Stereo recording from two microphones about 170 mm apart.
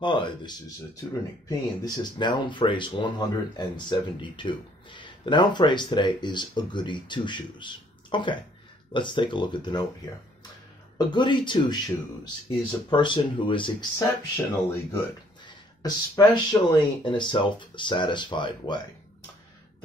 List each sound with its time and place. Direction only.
0.0 s speech: 25° left (ahead or behind)
2.1 s speech: 25° left (ahead or behind)
11.1 s speech: 25° left (ahead or behind)
13.9 s speech: 15° left (ahead or behind)